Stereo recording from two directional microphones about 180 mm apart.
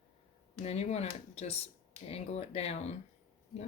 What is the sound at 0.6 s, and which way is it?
Speech, 35° left (ahead or behind).